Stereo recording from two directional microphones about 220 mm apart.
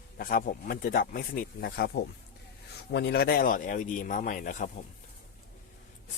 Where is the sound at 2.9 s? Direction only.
50° left (ahead or behind).